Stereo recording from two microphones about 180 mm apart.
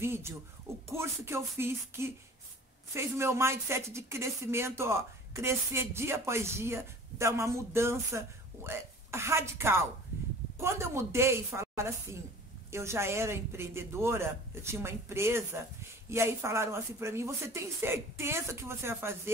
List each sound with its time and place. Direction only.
0.0 s speech: 15° right (ahead or behind)